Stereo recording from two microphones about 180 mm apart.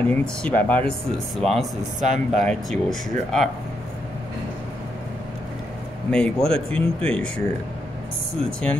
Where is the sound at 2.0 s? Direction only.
40° right (ahead or behind).